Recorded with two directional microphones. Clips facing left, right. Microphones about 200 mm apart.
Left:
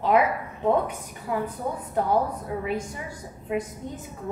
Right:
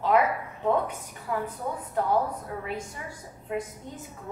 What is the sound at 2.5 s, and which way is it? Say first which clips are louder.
Speech: left 5 dB; 15° left (ahead or behind).